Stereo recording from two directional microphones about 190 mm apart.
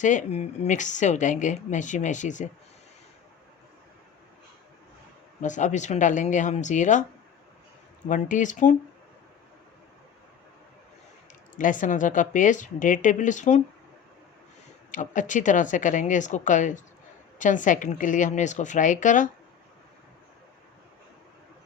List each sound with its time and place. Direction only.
0.0 s a woman's voice: 40° left (ahead or behind)
5.4 s a woman's voice: 40° left (ahead or behind)
8.0 s a woman's voice: 40° left (ahead or behind)
11.5 s speech: 45° left (ahead or behind)
14.8 s a woman's voice: 45° left (ahead or behind)